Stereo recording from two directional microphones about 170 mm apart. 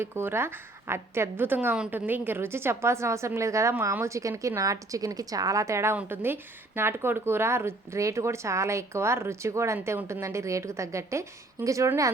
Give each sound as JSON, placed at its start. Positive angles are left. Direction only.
{"t": 0.0, "sound": "a woman's voice", "side_deg": -15}